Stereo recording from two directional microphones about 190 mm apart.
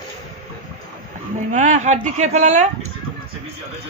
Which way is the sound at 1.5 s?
40° right (ahead or behind).